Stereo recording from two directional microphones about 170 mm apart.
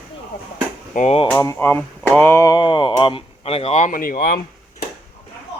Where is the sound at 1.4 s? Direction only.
15° left (ahead or behind); by 4.4 s 60° left (ahead or behind).